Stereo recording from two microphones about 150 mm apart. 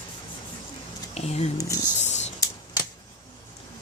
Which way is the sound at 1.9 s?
50° left (ahead or behind).